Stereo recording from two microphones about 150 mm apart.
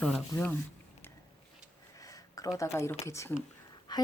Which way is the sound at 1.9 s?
20° left (ahead or behind).